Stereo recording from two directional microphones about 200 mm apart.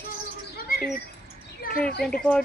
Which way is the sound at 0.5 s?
45° left (ahead or behind).